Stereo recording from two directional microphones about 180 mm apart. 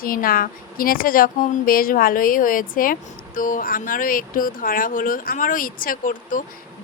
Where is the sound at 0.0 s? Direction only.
50° left (ahead or behind).